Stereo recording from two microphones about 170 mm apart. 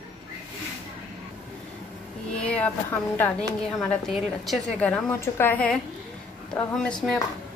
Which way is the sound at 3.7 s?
Centre (ahead or behind).